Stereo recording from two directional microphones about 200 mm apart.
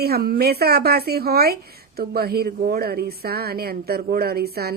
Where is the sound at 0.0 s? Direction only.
50° right (ahead or behind).